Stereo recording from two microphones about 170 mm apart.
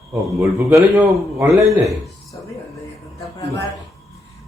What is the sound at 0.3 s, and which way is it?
A man's voice, 10° right (ahead or behind).